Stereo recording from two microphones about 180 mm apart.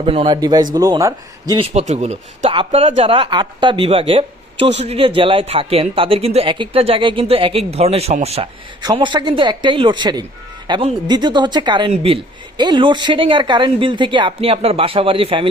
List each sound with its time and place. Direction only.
0.0 s speech: 30° right (ahead or behind)
1.7 s speech: 40° right (ahead or behind)
8.8 s speech: 25° right (ahead or behind)